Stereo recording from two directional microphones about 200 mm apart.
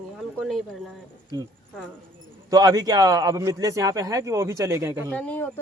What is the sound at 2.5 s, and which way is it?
A man's voice, 20° right (ahead or behind).